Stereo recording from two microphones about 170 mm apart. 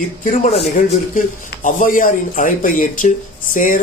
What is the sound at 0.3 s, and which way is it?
Speech, 45° left (ahead or behind).